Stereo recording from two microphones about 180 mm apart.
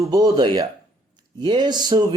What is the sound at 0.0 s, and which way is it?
Speech, 20° right (ahead or behind).